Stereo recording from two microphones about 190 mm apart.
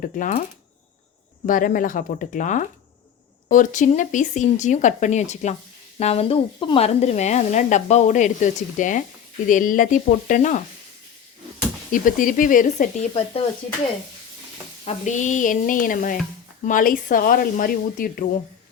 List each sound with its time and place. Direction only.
0.0 s speech: 45° left (ahead or behind)
1.5 s speech: 45° left (ahead or behind)
11.9 s speech: 45° left (ahead or behind)
14.8 s speech: 40° left (ahead or behind)